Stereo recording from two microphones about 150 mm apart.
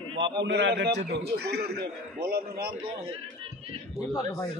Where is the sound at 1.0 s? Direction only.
90° right.